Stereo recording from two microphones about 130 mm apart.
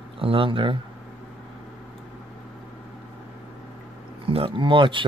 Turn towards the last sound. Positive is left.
turn(degrees=-40)  # may be behind; listen again after turning